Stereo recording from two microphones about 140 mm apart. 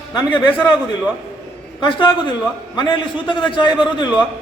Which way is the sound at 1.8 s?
35° left (ahead or behind).